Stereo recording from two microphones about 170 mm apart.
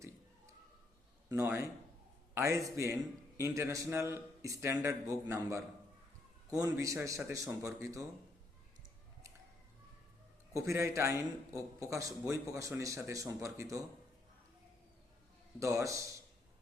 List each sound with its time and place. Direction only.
1.3 s speech: 15° right (ahead or behind)
10.5 s speech: 20° right (ahead or behind)
15.6 s speech: 20° right (ahead or behind)